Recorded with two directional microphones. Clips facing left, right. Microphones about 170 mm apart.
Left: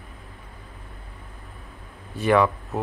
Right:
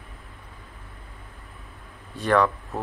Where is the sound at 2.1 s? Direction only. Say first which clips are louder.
Left 2 dB; 5° left (ahead or behind).